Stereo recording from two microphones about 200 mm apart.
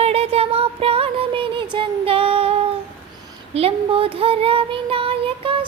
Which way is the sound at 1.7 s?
25° right (ahead or behind).